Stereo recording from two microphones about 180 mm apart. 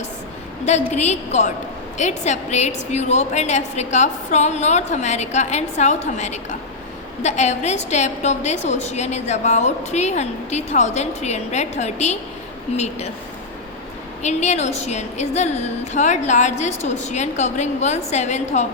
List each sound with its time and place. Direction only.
0.9 s a woman's voice: 40° left (ahead or behind)
14.2 s a woman's voice: 40° left (ahead or behind)